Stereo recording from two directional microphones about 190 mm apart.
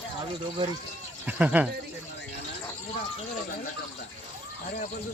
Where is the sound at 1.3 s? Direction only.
10° right (ahead or behind).